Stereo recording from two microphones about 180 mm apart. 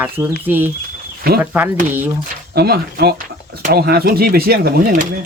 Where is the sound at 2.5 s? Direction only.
60° right (ahead or behind).